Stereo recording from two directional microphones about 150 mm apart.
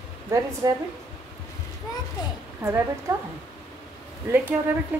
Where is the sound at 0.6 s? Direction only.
25° right (ahead or behind).